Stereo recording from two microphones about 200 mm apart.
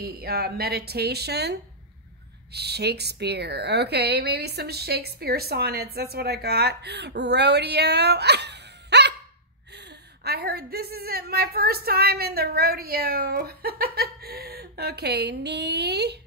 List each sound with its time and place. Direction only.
0.0 s a woman's voice: 50° right (ahead or behind)